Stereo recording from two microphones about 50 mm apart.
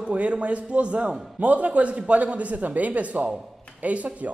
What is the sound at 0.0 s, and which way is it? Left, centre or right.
A woman's voice, right.